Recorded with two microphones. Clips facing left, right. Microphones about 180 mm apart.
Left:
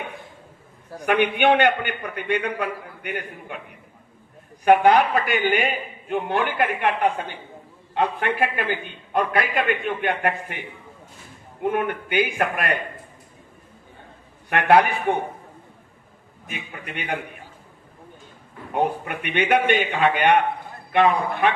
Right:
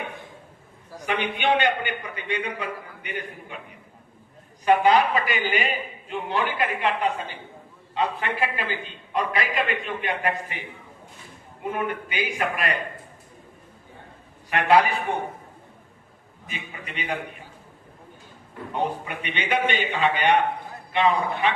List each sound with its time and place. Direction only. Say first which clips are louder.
0.9 s a man's voice: left 7 dB; 55° left (ahead or behind)
4.6 s a man's voice: left 3 dB; 55° left (ahead or behind)
11.6 s a man's voice: left 4 dB; 60° left (ahead or behind)
14.5 s a man's voice: left 2 dB; 60° left (ahead or behind)
16.5 s a man's voice: left 3 dB; 55° left (ahead or behind)
18.7 s a man's voice: left 4 dB; 55° left (ahead or behind)